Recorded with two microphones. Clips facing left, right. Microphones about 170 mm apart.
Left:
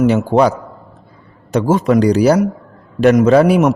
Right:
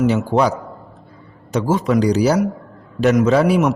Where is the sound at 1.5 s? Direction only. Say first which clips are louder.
Left 4 dB; 55° left (ahead or behind).